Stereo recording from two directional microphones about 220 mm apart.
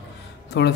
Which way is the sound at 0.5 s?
50° left (ahead or behind).